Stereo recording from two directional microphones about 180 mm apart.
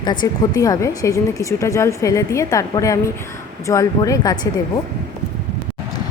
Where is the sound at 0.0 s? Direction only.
25° left (ahead or behind).